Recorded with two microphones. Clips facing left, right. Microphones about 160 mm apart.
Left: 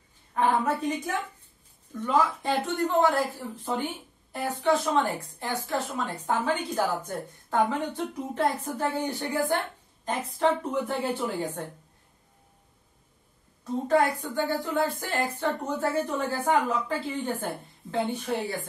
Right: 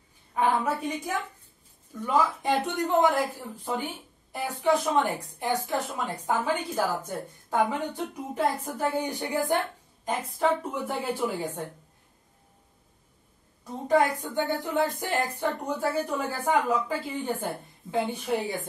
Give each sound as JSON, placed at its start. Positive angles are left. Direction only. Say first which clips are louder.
{"t": 0.3, "sound": "a woman's voice", "louder": "left 1 dB", "side_deg": -10}
{"t": 2.0, "sound": "a woman's voice", "louder": "even", "side_deg": -10}
{"t": 13.8, "sound": "a woman's voice", "louder": "right 1 dB", "side_deg": -15}
{"t": 17.9, "sound": "a woman's voice", "louder": "right 1 dB", "side_deg": -10}